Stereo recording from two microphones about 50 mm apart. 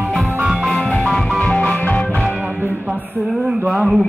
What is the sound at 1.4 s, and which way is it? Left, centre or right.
Music, left.